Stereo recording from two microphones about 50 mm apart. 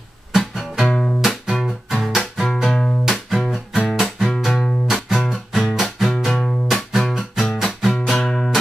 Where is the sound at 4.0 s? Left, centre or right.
Centre.